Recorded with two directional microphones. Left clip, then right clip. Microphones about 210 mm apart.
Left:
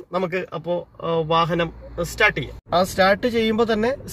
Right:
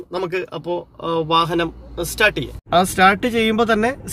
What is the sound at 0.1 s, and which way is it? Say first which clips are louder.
Speech: even; 35° right (ahead or behind).